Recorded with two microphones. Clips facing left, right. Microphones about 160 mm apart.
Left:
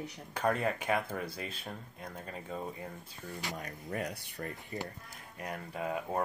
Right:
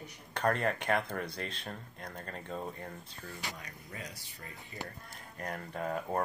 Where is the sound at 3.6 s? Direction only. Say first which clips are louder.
Left 8 dB; 55° left (ahead or behind).